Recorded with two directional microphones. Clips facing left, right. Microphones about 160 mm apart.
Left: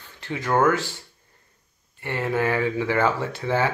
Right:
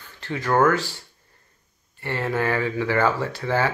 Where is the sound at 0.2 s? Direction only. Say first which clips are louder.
Right 1 dB; 20° left (ahead or behind).